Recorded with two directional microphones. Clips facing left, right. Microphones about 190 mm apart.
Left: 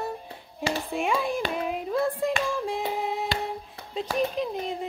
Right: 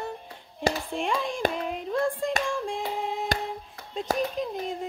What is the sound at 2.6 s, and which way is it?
Female singing, 5° left (ahead or behind).